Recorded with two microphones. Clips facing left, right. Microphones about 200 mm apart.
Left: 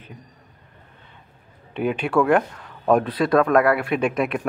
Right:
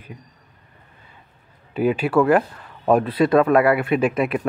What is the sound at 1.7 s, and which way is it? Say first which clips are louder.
Speech: right 3 dB; 5° right (ahead or behind).